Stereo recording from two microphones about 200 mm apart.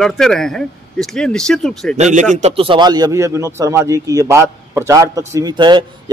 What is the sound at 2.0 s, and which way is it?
A man's voice, 35° right (ahead or behind).